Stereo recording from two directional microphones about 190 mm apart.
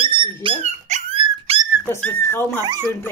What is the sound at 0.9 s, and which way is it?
Dog, 30° right (ahead or behind).